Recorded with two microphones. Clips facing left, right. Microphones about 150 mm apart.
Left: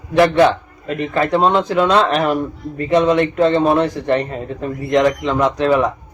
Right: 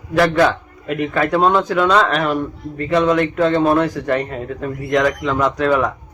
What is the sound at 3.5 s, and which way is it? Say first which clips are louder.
Speech: even; centre (ahead or behind).